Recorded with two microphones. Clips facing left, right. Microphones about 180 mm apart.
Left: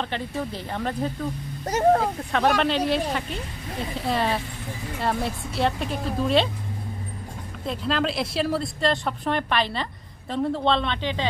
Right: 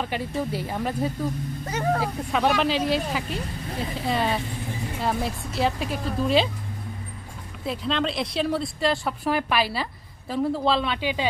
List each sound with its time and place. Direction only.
0.0 s speech: 10° right (ahead or behind)
1.7 s speech: 40° left (ahead or behind)
2.3 s speech: centre (ahead or behind)
7.6 s speech: centre (ahead or behind)